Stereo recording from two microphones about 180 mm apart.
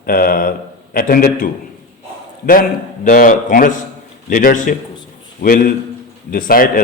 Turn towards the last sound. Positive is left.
turn(degrees=55)  # may be behind; listen again after turning